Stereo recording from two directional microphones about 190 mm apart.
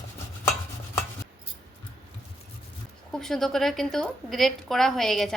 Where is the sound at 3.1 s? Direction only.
Centre (ahead or behind).